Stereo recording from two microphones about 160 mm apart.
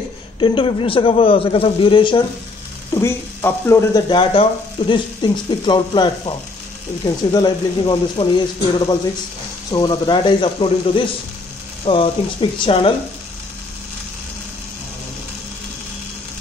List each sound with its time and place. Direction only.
0.4 s a man's voice: 30° left (ahead or behind)
2.9 s speech: 15° left (ahead or behind)
4.1 s speech: 35° left (ahead or behind)
7.3 s a man's voice: 25° left (ahead or behind)